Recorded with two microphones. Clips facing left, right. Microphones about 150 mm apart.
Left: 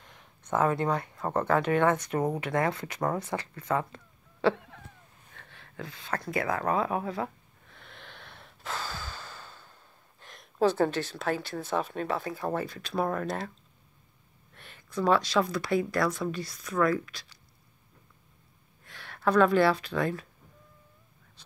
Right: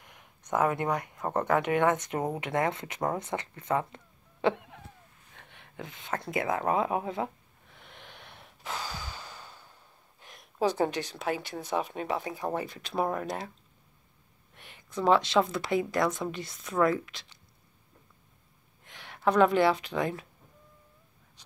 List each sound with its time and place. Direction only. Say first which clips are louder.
0.0 s speech: left 1 dB; 15° right (ahead or behind)
7.7 s breathing: left 1 dB; 15° right (ahead or behind)
10.2 s speech: left 3 dB; 15° right (ahead or behind)
14.5 s speech: left 2 dB; 15° right (ahead or behind)
18.9 s speech: even; 20° right (ahead or behind)
21.4 s a sound: left 1 dB; 15° right (ahead or behind)